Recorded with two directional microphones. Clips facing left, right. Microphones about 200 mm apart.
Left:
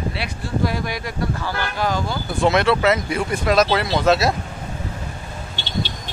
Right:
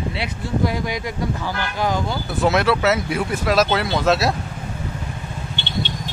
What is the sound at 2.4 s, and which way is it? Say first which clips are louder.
Speech: left 1 dB; 5° right (ahead or behind).